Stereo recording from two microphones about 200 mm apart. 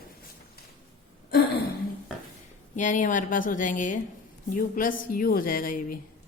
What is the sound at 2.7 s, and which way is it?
A woman's voice, 40° left (ahead or behind).